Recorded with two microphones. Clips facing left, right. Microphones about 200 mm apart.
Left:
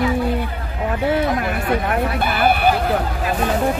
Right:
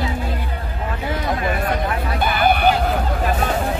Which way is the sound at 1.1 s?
70° left (ahead or behind).